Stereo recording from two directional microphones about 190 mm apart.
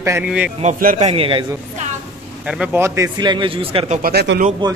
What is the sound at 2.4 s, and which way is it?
A man's voice, 5° right (ahead or behind).